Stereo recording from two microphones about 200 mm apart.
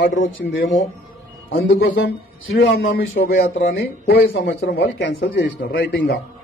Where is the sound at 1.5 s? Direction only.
50° left (ahead or behind).